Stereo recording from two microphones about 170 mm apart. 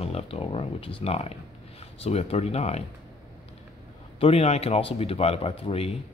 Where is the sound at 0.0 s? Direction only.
35° left (ahead or behind).